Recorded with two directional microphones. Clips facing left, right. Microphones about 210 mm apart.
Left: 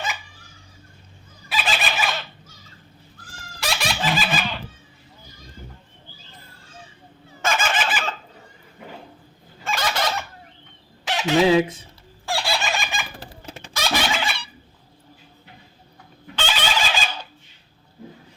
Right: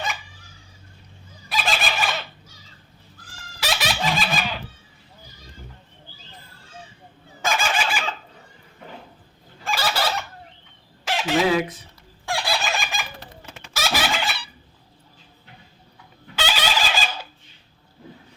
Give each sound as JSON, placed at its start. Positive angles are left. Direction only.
{"t": 1.5, "sound": "fowl", "side_deg": 0}
{"t": 3.6, "sound": "a sound", "side_deg": 0}
{"t": 7.4, "sound": "fowl", "side_deg": 0}
{"t": 9.6, "sound": "fowl", "side_deg": -5}
{"t": 11.4, "sound": "speech", "side_deg": 25}
{"t": 12.3, "sound": "fowl", "side_deg": 0}
{"t": 13.1, "sound": "fowl", "side_deg": 35}
{"t": 13.7, "sound": "fowl", "side_deg": -5}
{"t": 16.3, "sound": "fowl", "side_deg": -5}